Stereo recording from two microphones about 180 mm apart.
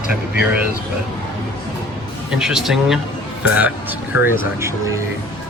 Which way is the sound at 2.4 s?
Centre (ahead or behind).